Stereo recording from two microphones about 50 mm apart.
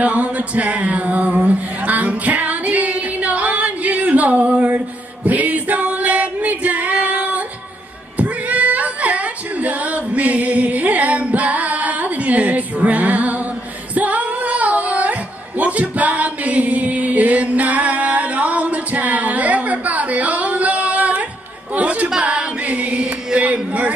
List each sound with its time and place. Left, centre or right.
0.0 s a sound: right
5.2 s female singing: right
21.7 s music: right
22.2 s singing: right